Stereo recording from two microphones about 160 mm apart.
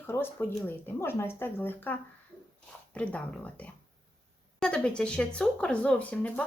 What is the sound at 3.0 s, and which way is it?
Speech, 10° left (ahead or behind).